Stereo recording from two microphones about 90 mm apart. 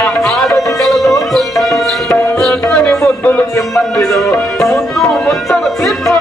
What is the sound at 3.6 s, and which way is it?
Music, centre (ahead or behind).